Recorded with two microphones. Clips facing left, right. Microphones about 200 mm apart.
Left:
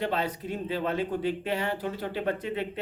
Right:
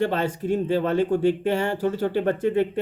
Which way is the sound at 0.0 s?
45° right (ahead or behind).